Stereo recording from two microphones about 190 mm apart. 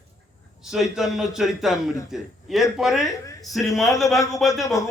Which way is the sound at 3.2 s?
15° left (ahead or behind).